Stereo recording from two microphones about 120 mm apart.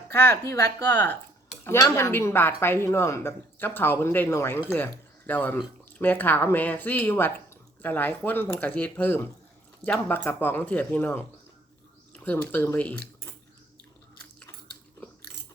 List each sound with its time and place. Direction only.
0.1 s speech: 20° left (ahead or behind)
0.9 s speech: 15° left (ahead or behind)
12.2 s speech: 15° left (ahead or behind)